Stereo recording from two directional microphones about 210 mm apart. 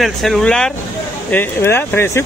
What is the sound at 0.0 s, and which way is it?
A man's voice, centre (ahead or behind).